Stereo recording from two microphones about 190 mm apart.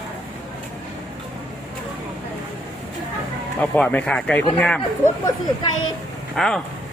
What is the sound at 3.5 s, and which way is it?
Speech, 5° left (ahead or behind).